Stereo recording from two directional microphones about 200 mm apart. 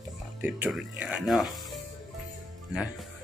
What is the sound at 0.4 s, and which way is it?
Speech, 5° right (ahead or behind).